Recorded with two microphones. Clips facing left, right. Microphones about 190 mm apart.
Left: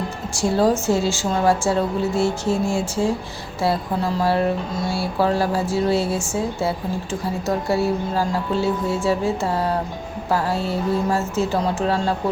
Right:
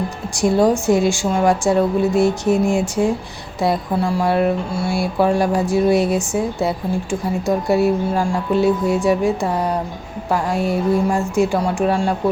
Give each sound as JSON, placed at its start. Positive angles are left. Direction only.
{"t": 0.3, "sound": "speech", "side_deg": -15}